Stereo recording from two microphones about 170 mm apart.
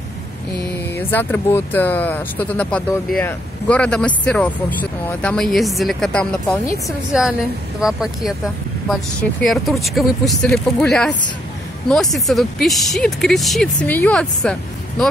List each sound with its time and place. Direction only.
0.9 s speech: 10° left (ahead or behind)
9.4 s speech: centre (ahead or behind)